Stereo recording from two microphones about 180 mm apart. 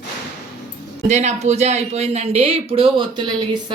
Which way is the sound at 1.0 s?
40° right (ahead or behind).